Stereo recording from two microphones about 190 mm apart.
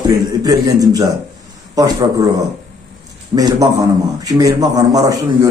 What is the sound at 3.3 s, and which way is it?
A man's voice, 20° right (ahead or behind).